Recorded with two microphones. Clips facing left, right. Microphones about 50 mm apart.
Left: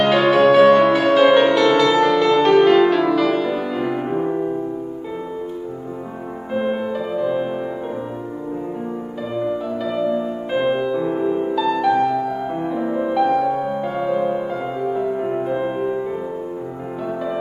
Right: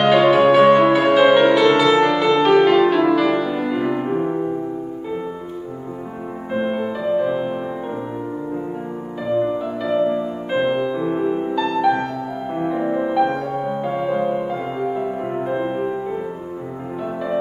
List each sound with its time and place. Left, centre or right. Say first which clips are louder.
0.0 s music: right 1 dB; centre
6.5 s music: left 1 dB; centre
9.4 s music: right 1 dB; right
10.5 s music: even; centre